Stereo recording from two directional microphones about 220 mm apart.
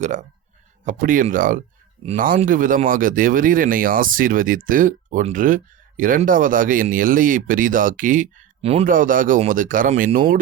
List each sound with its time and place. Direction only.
0.0 s speech: 35° right (ahead or behind)